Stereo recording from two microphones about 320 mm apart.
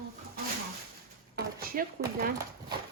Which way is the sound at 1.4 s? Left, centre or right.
Right.